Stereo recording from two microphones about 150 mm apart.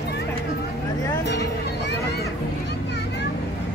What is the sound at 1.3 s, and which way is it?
Music, 90° left.